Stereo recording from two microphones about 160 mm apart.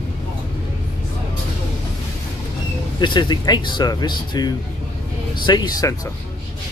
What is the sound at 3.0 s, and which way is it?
Speech, 30° left (ahead or behind).